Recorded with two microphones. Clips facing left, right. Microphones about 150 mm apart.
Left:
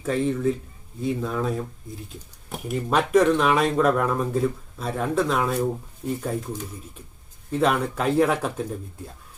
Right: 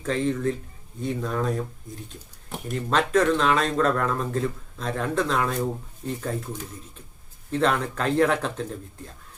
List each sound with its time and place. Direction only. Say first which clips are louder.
0.0 s speech: left 2 dB; 5° left (ahead or behind)
7.5 s speech: left 1 dB; 10° left (ahead or behind)